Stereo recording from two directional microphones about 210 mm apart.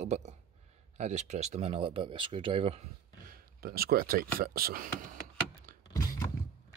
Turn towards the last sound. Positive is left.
turn(degrees=15)  # may be behind; listen again after turning